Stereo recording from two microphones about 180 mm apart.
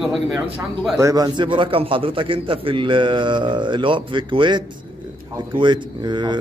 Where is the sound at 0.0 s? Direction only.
Centre (ahead or behind).